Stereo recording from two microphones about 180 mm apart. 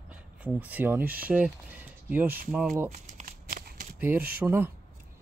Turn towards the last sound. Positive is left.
turn(degrees=-10)  # may be behind; listen again after turning